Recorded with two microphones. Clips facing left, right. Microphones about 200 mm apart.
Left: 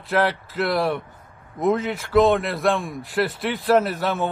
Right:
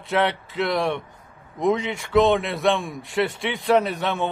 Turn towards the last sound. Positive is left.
turn(degrees=5)  # may be behind; listen again after turning